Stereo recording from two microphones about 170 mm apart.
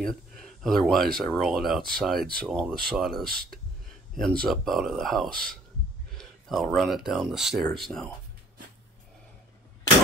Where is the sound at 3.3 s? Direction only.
65° right (ahead or behind).